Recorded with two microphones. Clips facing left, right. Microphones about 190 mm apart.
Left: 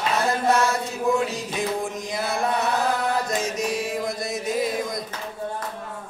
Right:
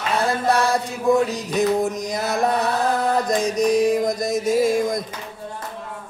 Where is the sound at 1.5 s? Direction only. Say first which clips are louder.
Right 7 dB; 40° right (ahead or behind).